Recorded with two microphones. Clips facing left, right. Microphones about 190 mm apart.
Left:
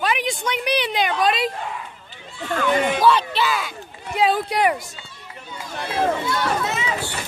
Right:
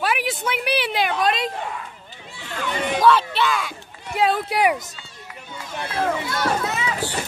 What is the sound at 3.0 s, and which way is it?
Speech, centre (ahead or behind).